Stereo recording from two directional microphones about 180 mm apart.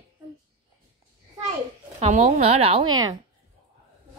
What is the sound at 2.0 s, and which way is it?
A child's voice, 40° right (ahead or behind).